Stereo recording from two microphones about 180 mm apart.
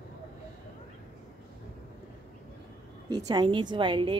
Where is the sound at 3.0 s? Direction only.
20° right (ahead or behind).